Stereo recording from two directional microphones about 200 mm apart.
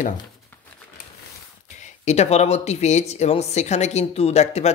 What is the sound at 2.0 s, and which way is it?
A woman's voice, 35° left (ahead or behind).